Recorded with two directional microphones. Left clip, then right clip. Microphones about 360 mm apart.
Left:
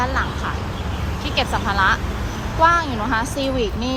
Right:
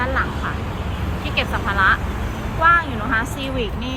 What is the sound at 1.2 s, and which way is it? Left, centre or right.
Vehicle, centre.